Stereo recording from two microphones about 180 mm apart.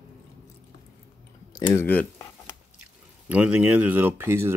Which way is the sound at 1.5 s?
10° left (ahead or behind).